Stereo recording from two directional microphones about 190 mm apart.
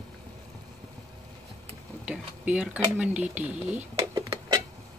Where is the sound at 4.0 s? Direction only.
20° right (ahead or behind).